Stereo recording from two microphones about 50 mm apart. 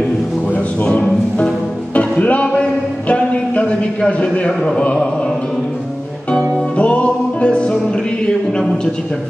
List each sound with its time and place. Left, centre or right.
0.5 s music: left
4.5 s speech: centre
6.8 s music: left